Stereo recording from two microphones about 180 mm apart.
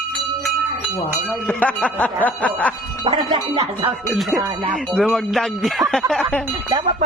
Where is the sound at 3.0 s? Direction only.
30° right (ahead or behind).